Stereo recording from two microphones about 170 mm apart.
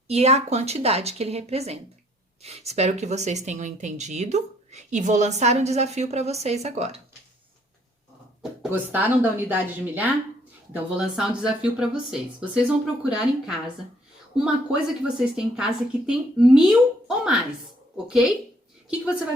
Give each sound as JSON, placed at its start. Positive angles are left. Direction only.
{"t": 0.1, "sound": "speech", "side_deg": -40}
{"t": 8.4, "sound": "a woman's voice", "side_deg": -10}